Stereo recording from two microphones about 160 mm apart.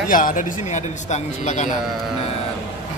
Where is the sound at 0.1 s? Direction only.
60° left (ahead or behind).